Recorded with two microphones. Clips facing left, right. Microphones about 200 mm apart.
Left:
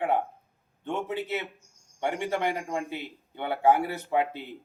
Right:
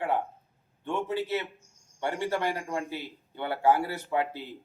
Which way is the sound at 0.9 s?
20° left (ahead or behind).